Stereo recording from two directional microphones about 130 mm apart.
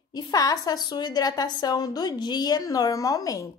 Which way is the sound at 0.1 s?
30° left (ahead or behind).